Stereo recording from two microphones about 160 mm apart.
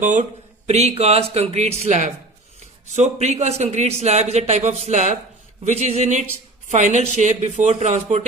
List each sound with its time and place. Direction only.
0.0 s a man's voice: 50° right (ahead or behind)